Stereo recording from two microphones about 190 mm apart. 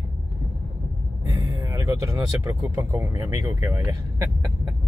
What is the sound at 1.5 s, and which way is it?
Speech, 20° right (ahead or behind).